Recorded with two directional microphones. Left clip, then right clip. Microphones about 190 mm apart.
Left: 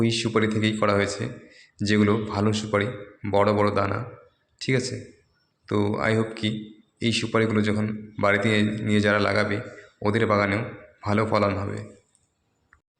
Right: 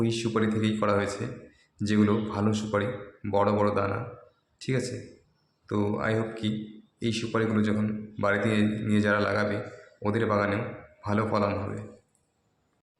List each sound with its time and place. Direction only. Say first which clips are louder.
0.0 s a man's voice: left 4 dB; 15° left (ahead or behind)